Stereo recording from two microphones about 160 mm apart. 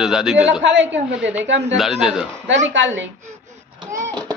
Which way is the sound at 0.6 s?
90° right.